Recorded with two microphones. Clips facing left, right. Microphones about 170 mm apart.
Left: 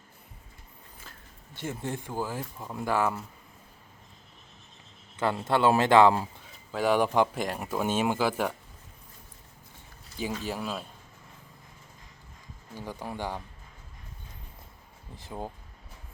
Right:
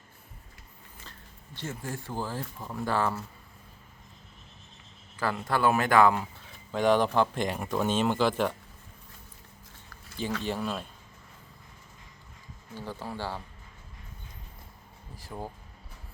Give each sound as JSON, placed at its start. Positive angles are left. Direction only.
{"t": 1.6, "sound": "speech", "side_deg": 20}
{"t": 5.1, "sound": "speech", "side_deg": 25}
{"t": 6.7, "sound": "speech", "side_deg": 5}
{"t": 10.4, "sound": "speech", "side_deg": 5}
{"t": 12.7, "sound": "speech", "side_deg": 15}
{"t": 15.1, "sound": "speech", "side_deg": 20}